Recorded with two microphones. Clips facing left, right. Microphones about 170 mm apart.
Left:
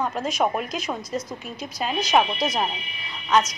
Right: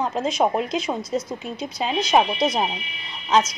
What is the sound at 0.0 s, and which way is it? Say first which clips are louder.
Speech: right 2 dB; 20° right (ahead or behind).